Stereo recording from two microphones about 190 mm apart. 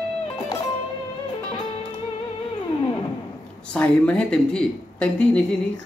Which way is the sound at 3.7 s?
5° left (ahead or behind).